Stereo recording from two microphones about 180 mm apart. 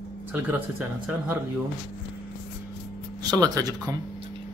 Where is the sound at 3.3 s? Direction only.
20° right (ahead or behind).